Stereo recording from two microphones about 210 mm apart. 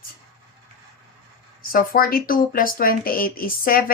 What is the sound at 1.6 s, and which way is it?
Speech, 45° left (ahead or behind).